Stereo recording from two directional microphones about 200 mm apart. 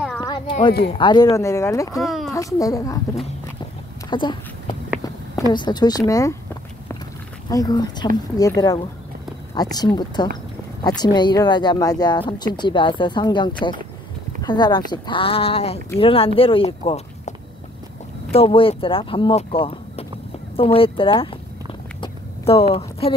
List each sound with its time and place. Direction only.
0.2 s a sound: 20° left (ahead or behind)
0.8 s speech: 25° left (ahead or behind)
2.0 s speech: centre (ahead or behind)
2.3 s speech: 15° left (ahead or behind)
4.1 s speech: 25° left (ahead or behind)
7.4 s speech: 20° left (ahead or behind)
18.3 s speech: 30° left (ahead or behind)
22.0 s a sound: 30° left (ahead or behind)